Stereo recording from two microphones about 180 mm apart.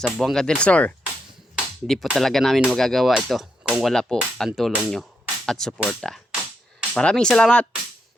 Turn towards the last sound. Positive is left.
turn(degrees=5)  # may be behind; listen again after turning